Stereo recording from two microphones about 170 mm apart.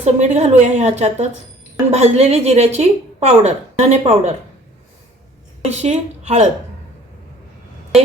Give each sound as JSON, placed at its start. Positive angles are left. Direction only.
{"t": 0.0, "sound": "a woman's voice", "side_deg": -40}
{"t": 5.6, "sound": "a woman's voice", "side_deg": -40}